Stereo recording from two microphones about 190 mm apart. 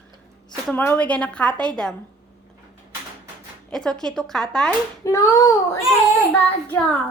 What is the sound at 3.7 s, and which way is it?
A woman's voice, 5° left (ahead or behind).